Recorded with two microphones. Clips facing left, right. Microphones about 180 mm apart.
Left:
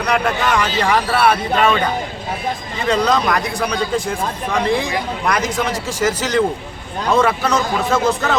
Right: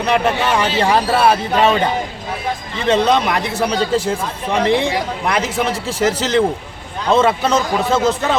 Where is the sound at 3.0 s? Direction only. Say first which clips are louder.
Right 1 dB; 25° right (ahead or behind).